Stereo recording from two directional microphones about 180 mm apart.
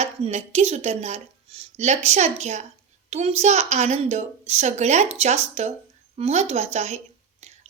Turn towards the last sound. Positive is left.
turn(degrees=-35)  # may be behind; listen again after turning